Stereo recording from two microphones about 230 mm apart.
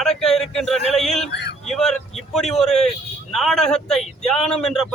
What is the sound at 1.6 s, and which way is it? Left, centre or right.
A man's voice, centre.